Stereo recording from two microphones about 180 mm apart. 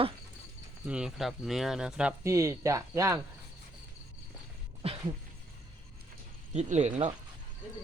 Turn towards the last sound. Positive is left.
turn(degrees=-40)  # may be behind; listen again after turning